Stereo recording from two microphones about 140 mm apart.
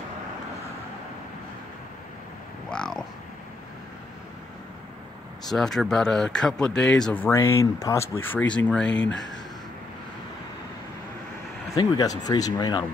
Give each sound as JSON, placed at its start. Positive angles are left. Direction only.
{"t": 2.7, "sound": "a sound", "side_deg": 5}
{"t": 5.5, "sound": "speech", "side_deg": 5}
{"t": 11.7, "sound": "speech", "side_deg": 25}